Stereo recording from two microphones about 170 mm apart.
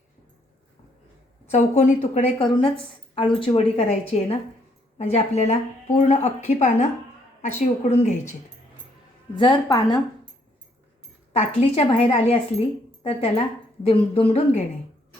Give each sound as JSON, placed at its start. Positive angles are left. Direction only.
{"t": 1.5, "sound": "a woman's voice", "side_deg": 45}
{"t": 2.4, "sound": "a woman's voice", "side_deg": 30}
{"t": 9.3, "sound": "a woman's voice", "side_deg": 25}
{"t": 11.3, "sound": "a woman's voice", "side_deg": 35}